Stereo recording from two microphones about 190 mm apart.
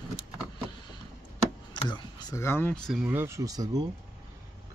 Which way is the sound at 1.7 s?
25° left (ahead or behind).